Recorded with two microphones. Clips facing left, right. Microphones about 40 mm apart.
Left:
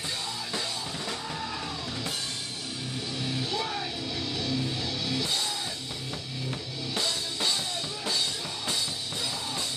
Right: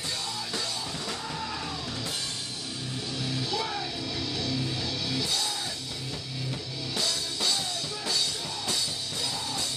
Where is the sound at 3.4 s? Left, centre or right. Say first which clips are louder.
Even; centre.